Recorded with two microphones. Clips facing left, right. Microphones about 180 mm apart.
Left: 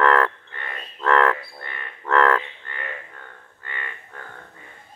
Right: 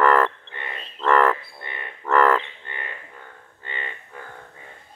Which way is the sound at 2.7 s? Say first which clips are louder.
Left 2 dB; 20° right (ahead or behind).